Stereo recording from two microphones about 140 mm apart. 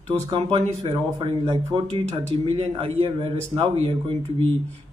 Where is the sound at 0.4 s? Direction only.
50° right (ahead or behind).